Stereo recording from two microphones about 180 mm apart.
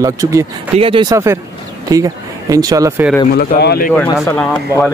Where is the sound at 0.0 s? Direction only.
15° right (ahead or behind).